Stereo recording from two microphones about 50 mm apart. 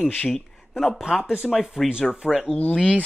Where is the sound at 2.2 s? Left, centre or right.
Centre.